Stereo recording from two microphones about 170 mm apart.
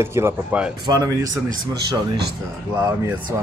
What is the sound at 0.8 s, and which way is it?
Speech, 20° right (ahead or behind).